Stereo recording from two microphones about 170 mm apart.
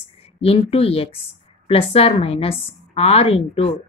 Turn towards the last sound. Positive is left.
turn(degrees=35)  # may be behind; listen again after turning